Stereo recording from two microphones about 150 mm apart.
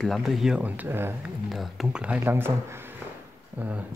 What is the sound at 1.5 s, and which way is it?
Speech, centre (ahead or behind).